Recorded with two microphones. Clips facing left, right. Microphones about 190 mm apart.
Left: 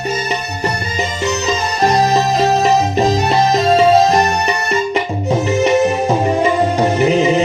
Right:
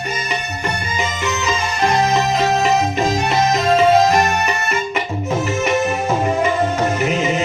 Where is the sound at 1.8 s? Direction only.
35° left (ahead or behind).